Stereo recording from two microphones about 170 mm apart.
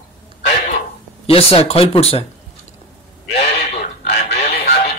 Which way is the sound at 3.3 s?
35° left (ahead or behind).